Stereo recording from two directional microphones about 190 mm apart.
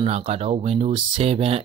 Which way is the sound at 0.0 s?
35° right (ahead or behind).